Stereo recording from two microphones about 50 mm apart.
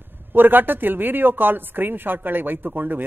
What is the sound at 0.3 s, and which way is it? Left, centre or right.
Speech, right.